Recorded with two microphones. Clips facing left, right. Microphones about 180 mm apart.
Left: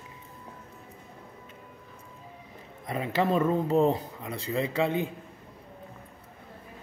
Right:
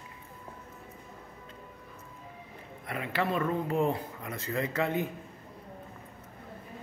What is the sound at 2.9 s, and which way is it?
Speech, 25° left (ahead or behind).